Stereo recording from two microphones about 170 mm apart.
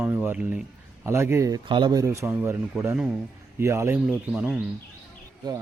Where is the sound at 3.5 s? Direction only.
15° right (ahead or behind).